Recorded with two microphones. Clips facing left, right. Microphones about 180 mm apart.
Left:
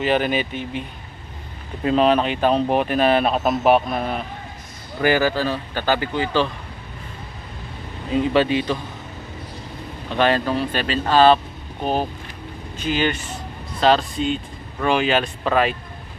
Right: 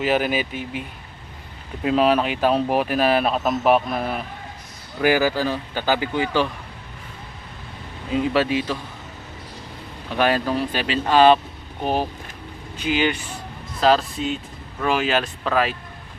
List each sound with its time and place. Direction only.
0.0 s speech: 5° right (ahead or behind)
8.1 s speech: 5° right (ahead or behind)
10.1 s speech: 10° right (ahead or behind)
12.7 s speech: 10° right (ahead or behind)